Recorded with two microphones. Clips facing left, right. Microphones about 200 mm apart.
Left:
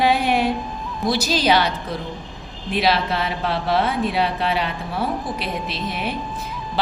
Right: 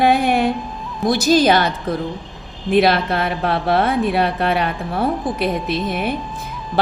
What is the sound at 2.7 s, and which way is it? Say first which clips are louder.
A woman's voice: right 5 dB; 55° right (ahead or behind).